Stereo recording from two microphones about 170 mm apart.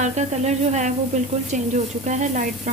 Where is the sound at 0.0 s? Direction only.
45° right (ahead or behind).